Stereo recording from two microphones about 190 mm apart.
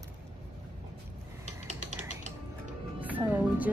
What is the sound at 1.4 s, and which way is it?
Ratchet, 35° right (ahead or behind).